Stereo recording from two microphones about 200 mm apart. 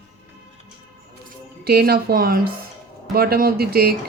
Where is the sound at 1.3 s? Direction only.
50° right (ahead or behind).